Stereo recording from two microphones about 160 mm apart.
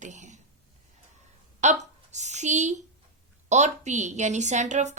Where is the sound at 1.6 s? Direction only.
45° right (ahead or behind).